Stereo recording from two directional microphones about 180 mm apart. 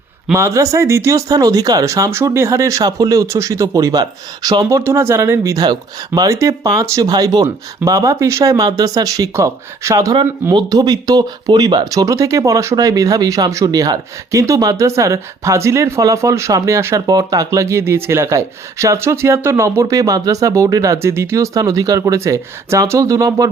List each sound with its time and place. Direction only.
0.3 s speech: 15° right (ahead or behind)